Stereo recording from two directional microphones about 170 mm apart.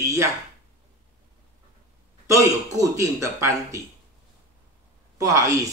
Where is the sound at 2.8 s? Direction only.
20° right (ahead or behind).